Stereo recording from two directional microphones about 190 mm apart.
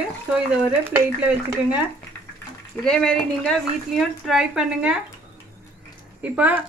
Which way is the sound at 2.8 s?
5° left (ahead or behind).